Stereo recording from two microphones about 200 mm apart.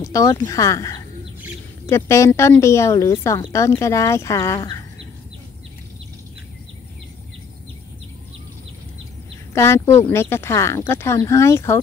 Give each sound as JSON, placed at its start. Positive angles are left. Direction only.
{"t": 0.0, "sound": "speech", "side_deg": 15}
{"t": 9.5, "sound": "speech", "side_deg": 15}